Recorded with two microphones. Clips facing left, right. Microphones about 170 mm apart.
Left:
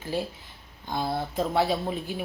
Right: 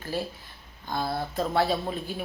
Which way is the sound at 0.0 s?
20° left (ahead or behind).